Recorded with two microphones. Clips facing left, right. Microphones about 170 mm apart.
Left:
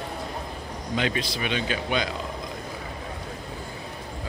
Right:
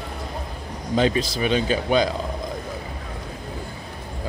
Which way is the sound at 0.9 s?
35° right (ahead or behind).